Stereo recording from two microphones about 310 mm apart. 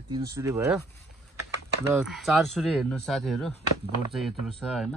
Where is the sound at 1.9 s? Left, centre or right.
Centre.